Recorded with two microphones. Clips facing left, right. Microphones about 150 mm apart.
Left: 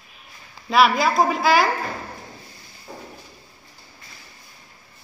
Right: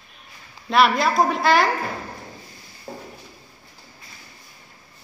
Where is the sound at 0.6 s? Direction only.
Centre (ahead or behind).